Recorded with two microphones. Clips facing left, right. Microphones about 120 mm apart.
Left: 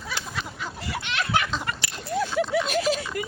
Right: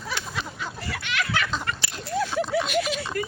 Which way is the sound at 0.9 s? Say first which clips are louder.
Left 2 dB; 25° left (ahead or behind).